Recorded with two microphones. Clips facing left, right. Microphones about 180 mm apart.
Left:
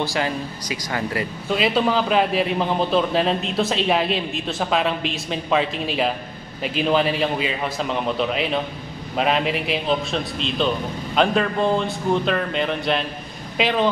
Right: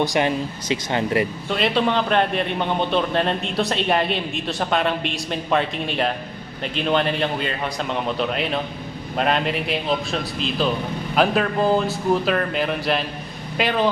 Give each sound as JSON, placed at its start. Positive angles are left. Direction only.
{"t": 0.0, "sound": "speech", "side_deg": -20}
{"t": 1.5, "sound": "a man's voice", "side_deg": 0}